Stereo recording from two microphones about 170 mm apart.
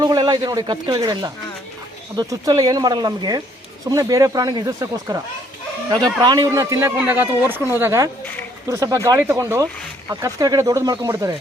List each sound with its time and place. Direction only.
0.0 s speech: 25° right (ahead or behind)